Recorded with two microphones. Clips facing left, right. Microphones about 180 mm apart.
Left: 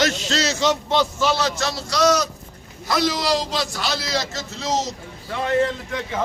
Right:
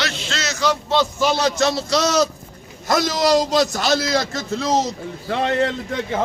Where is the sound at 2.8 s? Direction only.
45° right (ahead or behind).